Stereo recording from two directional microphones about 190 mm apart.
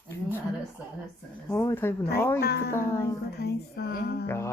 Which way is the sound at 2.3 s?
60° left (ahead or behind).